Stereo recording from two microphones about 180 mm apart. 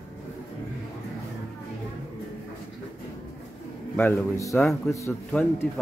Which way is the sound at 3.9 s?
10° left (ahead or behind).